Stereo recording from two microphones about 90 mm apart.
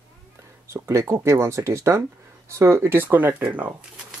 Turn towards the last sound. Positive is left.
turn(degrees=-15)  # may be behind; listen again after turning